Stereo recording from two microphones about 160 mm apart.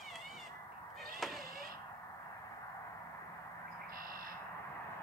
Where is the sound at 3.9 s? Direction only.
65° right (ahead or behind).